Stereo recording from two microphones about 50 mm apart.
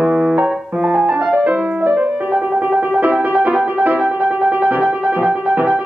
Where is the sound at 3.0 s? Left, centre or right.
Right.